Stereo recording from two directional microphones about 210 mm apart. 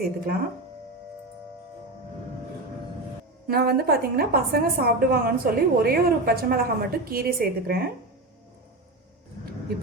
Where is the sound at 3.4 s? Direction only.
45° right (ahead or behind).